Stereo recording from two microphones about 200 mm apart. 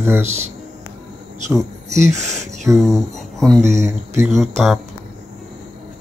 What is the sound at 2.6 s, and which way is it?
Speech, centre (ahead or behind).